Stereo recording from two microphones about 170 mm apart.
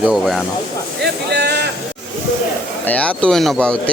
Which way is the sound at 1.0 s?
75° right (ahead or behind).